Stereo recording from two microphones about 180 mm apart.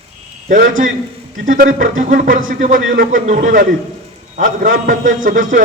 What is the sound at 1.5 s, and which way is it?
Speech, 45° right (ahead or behind).